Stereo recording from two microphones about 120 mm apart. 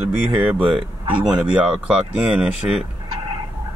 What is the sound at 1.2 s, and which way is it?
Speech, 5° right (ahead or behind).